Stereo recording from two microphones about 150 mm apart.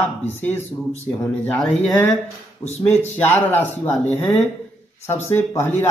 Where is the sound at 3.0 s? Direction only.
15° left (ahead or behind).